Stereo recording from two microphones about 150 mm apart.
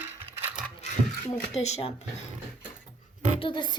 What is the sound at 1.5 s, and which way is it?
Speech, 45° left (ahead or behind).